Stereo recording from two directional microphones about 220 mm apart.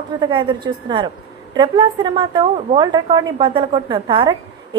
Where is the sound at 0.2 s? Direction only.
20° right (ahead or behind).